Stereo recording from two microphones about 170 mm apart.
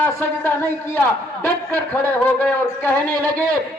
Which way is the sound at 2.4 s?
10° left (ahead or behind).